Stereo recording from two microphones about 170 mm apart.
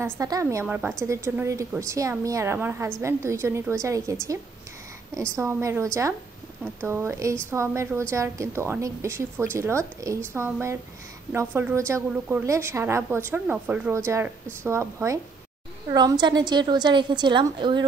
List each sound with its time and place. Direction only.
0.0 s a woman's voice: 20° right (ahead or behind)